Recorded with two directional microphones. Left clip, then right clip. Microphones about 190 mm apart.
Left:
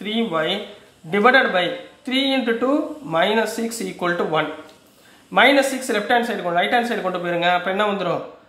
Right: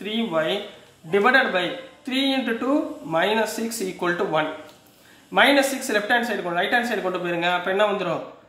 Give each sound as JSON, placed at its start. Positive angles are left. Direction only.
{"t": 0.0, "sound": "speech", "side_deg": 20}